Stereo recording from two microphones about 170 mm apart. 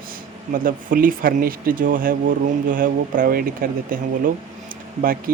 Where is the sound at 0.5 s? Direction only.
55° right (ahead or behind).